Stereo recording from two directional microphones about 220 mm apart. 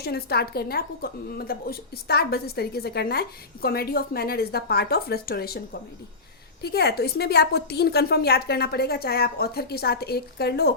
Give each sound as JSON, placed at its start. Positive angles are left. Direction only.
{"t": 0.0, "sound": "a woman's voice", "side_deg": 45}